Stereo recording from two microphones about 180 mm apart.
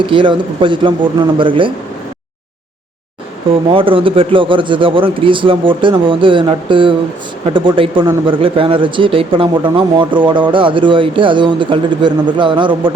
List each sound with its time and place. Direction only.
0.0 s speech: 25° right (ahead or behind)
3.7 s speech: 30° right (ahead or behind)